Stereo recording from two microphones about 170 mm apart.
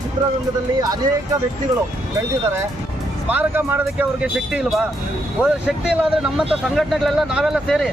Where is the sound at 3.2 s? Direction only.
10° right (ahead or behind).